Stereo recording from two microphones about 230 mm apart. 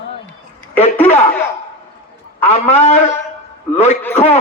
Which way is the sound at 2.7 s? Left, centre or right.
Left.